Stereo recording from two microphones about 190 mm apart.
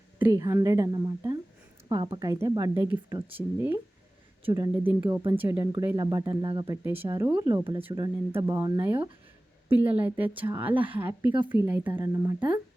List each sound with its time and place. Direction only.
0.2 s speech: 15° right (ahead or behind)
6.8 s speech: 10° right (ahead or behind)
10.0 s speech: 10° right (ahead or behind)